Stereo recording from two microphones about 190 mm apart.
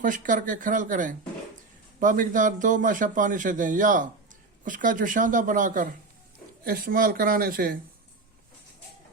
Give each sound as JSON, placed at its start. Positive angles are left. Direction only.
{"t": 0.0, "sound": "a man's voice", "side_deg": -45}